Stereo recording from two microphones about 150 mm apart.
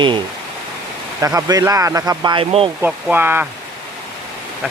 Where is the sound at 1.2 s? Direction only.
25° right (ahead or behind); by 2.7 s 40° right (ahead or behind).